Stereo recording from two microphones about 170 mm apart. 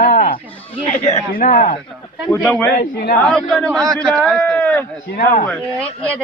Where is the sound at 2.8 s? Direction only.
90° left.